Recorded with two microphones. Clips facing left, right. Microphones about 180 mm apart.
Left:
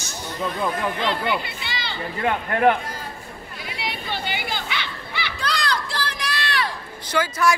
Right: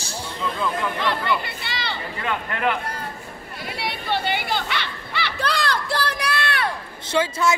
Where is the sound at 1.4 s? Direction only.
60° right (ahead or behind).